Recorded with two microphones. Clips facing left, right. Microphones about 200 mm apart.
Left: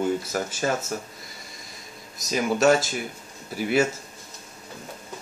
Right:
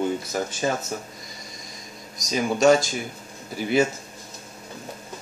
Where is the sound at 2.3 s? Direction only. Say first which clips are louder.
Right 2 dB; 5° left (ahead or behind).